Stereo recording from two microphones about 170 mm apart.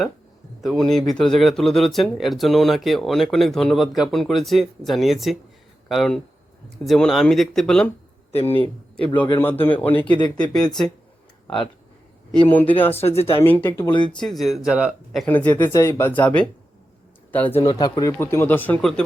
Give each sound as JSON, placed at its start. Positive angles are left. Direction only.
{"t": 0.6, "sound": "speech", "side_deg": 0}
{"t": 8.3, "sound": "a man's voice", "side_deg": 35}
{"t": 8.5, "sound": "speech", "side_deg": 10}
{"t": 9.0, "sound": "a man's voice", "side_deg": 25}
{"t": 9.3, "sound": "speech", "side_deg": 10}
{"t": 11.4, "sound": "speech", "side_deg": 30}
{"t": 12.5, "sound": "speech", "side_deg": 10}
{"t": 12.9, "sound": "speech", "side_deg": 35}
{"t": 13.4, "sound": "speech", "side_deg": 10}
{"t": 17.6, "sound": "speech", "side_deg": 25}